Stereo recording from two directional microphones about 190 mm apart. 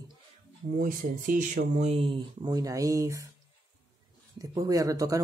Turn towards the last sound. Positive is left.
turn(degrees=-20)  # may be behind; listen again after turning